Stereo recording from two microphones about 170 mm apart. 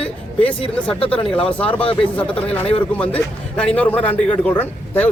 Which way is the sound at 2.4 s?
35° left (ahead or behind).